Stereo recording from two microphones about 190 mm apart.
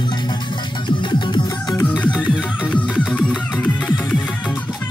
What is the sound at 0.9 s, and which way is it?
Music, 25° left (ahead or behind).